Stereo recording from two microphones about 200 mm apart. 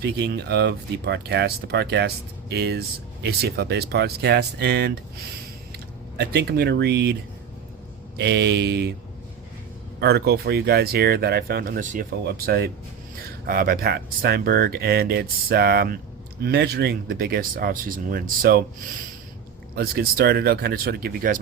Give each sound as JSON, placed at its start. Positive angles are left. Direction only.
{"t": 0.0, "sound": "speech", "side_deg": -55}
{"t": 8.2, "sound": "speech", "side_deg": -55}
{"t": 10.0, "sound": "speech", "side_deg": -55}
{"t": 19.7, "sound": "speech", "side_deg": -50}